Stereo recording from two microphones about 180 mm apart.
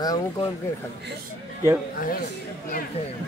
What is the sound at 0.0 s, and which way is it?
Speech, 20° left (ahead or behind).